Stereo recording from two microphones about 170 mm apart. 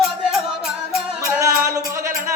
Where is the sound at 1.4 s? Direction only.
20° right (ahead or behind).